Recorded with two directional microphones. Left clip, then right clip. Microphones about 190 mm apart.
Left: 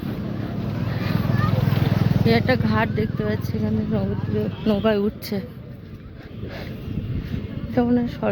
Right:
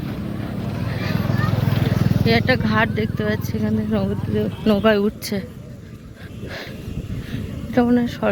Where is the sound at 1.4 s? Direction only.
60° right (ahead or behind).